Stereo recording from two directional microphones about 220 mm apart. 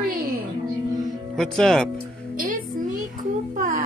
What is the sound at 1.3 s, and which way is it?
Speech, centre (ahead or behind).